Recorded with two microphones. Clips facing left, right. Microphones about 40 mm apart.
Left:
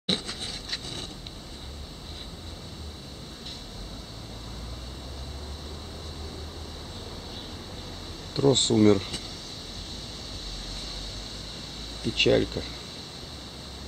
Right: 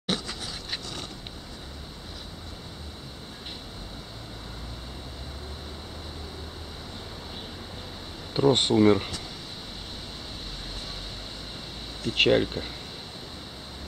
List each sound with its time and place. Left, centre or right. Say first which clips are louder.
8.3 s speech: right 1 dB; centre
12.0 s speech: right 1 dB; centre